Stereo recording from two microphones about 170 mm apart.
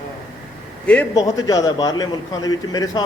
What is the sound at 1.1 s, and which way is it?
A man's voice, 20° left (ahead or behind).